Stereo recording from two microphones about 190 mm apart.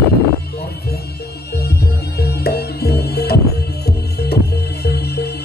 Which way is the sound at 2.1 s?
55° left (ahead or behind).